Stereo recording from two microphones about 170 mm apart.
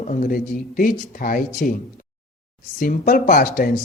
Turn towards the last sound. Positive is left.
turn(degrees=55)  # may be behind; listen again after turning